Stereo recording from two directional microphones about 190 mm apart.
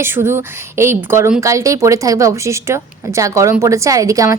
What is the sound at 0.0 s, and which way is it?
A woman's voice, 15° right (ahead or behind).